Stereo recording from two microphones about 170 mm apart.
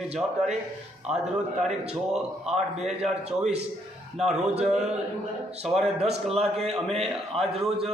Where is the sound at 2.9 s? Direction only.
40° right (ahead or behind).